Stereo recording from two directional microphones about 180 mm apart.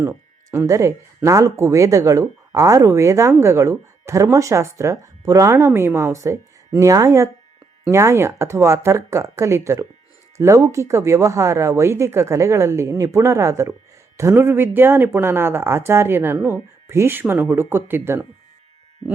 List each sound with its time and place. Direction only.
0.0 s speech: 15° right (ahead or behind)